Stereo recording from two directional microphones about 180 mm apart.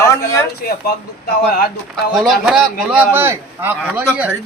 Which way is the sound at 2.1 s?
Centre (ahead or behind).